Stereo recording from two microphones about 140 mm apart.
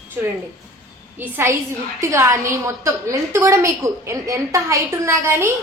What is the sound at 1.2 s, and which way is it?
A woman's voice, 15° right (ahead or behind).